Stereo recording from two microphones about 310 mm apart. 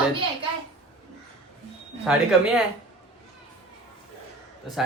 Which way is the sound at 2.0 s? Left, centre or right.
Centre.